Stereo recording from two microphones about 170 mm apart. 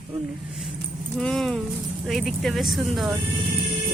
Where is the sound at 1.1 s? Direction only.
Centre (ahead or behind).